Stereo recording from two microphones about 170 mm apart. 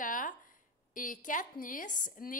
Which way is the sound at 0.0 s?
50° left (ahead or behind).